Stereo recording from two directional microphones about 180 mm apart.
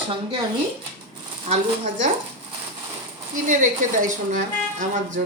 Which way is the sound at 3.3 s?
45° right (ahead or behind).